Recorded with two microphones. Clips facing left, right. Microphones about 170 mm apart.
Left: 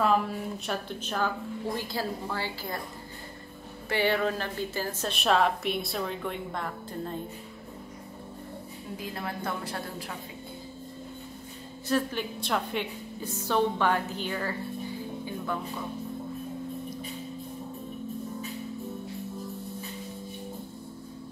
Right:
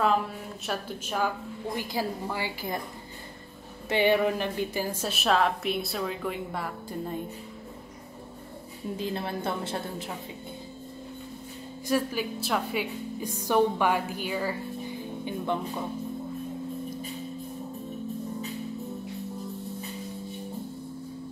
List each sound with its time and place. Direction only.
0.7 s a woman's voice: 10° right (ahead or behind)
3.9 s a woman's voice: 15° right (ahead or behind)
8.9 s a woman's voice: 25° right (ahead or behind)
11.9 s a woman's voice: 5° right (ahead or behind); by 15.8 s 20° right (ahead or behind)